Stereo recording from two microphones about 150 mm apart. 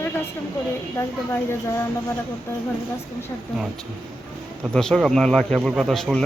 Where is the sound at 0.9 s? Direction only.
15° left (ahead or behind).